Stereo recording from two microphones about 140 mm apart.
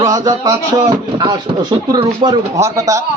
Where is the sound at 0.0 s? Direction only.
25° right (ahead or behind).